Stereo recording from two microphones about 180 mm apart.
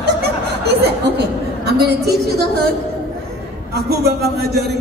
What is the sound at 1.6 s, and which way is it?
Speech, 65° right (ahead or behind).